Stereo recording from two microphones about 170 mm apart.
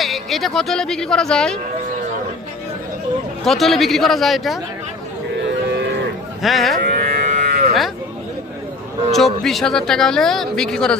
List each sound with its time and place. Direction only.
0.0 s speech: centre (ahead or behind)
3.4 s speech: centre (ahead or behind)
5.6 s cattle: 80° right
6.4 s speech: centre (ahead or behind)
6.9 s livestock: 50° right (ahead or behind)
9.1 s speech: centre (ahead or behind)